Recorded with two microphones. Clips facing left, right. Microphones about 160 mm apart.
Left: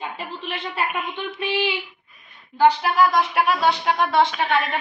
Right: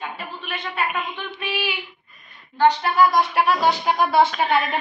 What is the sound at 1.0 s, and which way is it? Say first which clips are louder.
Speech: left 2 dB; 5° left (ahead or behind).